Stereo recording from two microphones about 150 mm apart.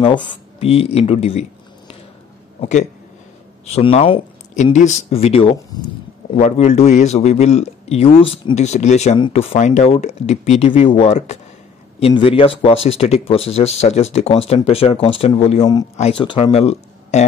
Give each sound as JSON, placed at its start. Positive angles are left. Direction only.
{"t": 0.0, "sound": "speech", "side_deg": 35}
{"t": 2.6, "sound": "a man's voice", "side_deg": 50}
{"t": 4.7, "sound": "a man's voice", "side_deg": 45}
{"t": 15.6, "sound": "speech", "side_deg": 25}